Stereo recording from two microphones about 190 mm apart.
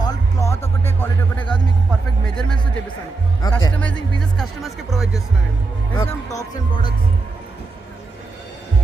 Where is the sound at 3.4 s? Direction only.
20° left (ahead or behind).